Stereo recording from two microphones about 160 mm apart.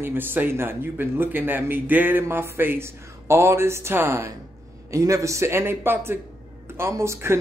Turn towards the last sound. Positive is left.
turn(degrees=-15)  # may be behind; listen again after turning